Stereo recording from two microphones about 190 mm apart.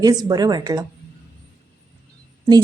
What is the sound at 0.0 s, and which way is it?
Speech, 20° right (ahead or behind).